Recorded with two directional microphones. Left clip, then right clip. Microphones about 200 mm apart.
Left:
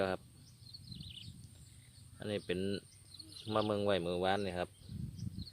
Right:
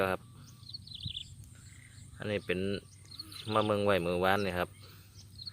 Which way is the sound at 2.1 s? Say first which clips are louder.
Right 5 dB; 15° left (ahead or behind).